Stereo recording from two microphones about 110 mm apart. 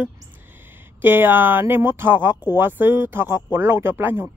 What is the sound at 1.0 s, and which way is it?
Speech, 20° right (ahead or behind).